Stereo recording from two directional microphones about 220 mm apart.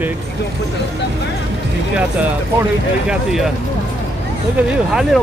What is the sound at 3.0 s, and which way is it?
Speech, 5° right (ahead or behind).